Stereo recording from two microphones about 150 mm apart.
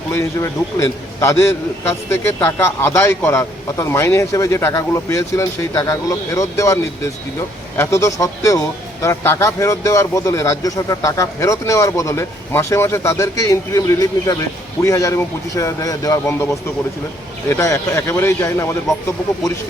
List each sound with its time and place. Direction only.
0.1 s a man's voice: 20° left (ahead or behind)
7.8 s a man's voice: 20° left (ahead or behind)